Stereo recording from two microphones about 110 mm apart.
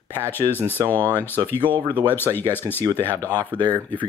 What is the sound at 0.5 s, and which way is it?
Speech, 20° left (ahead or behind).